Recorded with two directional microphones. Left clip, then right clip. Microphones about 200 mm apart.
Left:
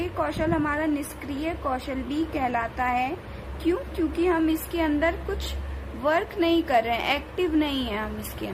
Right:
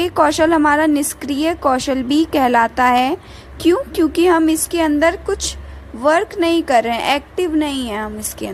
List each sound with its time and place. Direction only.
0.0 s a woman's voice: 45° right (ahead or behind)